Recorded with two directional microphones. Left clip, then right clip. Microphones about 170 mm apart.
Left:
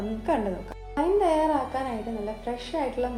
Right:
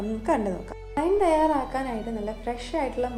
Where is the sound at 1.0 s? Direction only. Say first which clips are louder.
Right 1 dB; 30° right (ahead or behind).